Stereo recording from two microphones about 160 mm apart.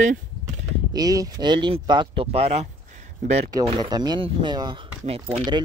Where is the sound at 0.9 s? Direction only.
20° right (ahead or behind); by 2.7 s 40° right (ahead or behind).